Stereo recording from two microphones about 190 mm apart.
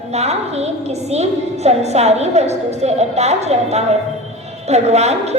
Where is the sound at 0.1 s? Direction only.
35° right (ahead or behind).